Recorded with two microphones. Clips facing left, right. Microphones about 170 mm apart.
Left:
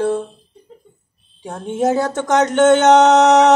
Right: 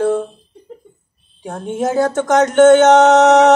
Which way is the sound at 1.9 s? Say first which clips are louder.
Right 3 dB; 40° right (ahead or behind).